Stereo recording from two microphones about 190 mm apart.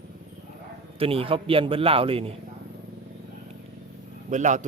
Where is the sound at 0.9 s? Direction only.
30° right (ahead or behind).